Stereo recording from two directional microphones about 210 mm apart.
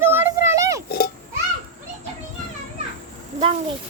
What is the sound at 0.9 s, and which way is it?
Oink, 45° left (ahead or behind).